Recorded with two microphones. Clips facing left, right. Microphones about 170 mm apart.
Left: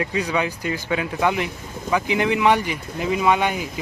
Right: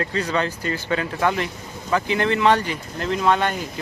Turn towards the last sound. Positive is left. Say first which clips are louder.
# left 1 dB
turn(degrees=10)  # may be behind; listen again after turning